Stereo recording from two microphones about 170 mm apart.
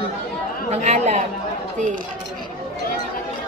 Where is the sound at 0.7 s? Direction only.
40° right (ahead or behind).